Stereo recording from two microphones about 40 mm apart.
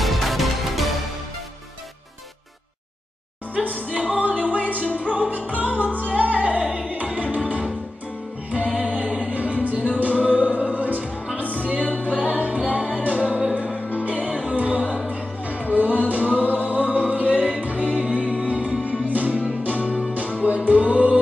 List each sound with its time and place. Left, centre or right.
0.0 s music: centre
3.5 s music: right
8.5 s music: right